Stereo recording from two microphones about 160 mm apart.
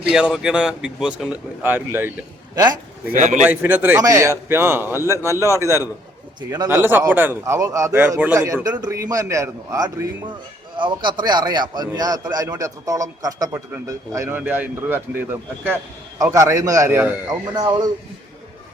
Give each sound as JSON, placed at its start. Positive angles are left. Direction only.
{"t": 0.1, "sound": "speech", "side_deg": -5}
{"t": 3.1, "sound": "a man's voice", "side_deg": -50}
{"t": 3.4, "sound": "a man's voice", "side_deg": -10}
{"t": 17.5, "sound": "a man's voice", "side_deg": -25}